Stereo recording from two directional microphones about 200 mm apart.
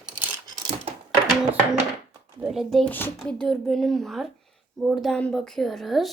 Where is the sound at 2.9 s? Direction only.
10° left (ahead or behind).